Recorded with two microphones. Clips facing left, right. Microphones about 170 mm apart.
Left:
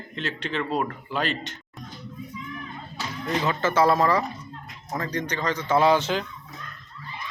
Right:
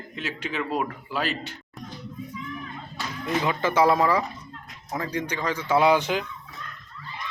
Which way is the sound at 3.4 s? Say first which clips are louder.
Even; 15° right (ahead or behind).